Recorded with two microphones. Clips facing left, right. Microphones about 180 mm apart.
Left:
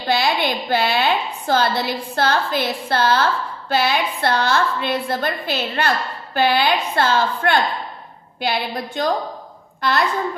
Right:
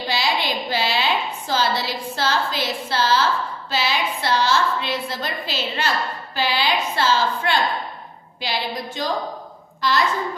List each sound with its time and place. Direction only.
0.1 s a woman's voice: 55° left (ahead or behind)